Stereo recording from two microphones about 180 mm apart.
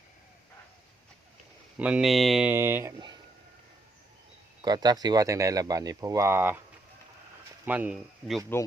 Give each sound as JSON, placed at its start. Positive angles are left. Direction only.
{"t": 1.8, "sound": "speech", "side_deg": -5}
{"t": 4.6, "sound": "speech", "side_deg": -20}
{"t": 7.6, "sound": "speech", "side_deg": -10}